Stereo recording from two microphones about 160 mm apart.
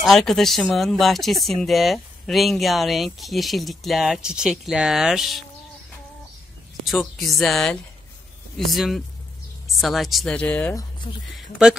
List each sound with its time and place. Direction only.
0.0 s speech: centre (ahead or behind)
6.8 s speech: centre (ahead or behind)
10.7 s speech: 25° left (ahead or behind)
11.3 s speech: 5° right (ahead or behind)